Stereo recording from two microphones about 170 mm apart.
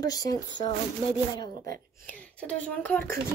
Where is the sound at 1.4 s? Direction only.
60° right (ahead or behind).